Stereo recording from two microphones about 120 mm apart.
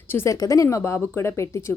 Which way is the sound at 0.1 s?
20° left (ahead or behind).